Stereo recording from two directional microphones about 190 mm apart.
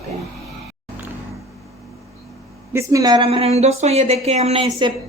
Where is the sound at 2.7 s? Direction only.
20° right (ahead or behind).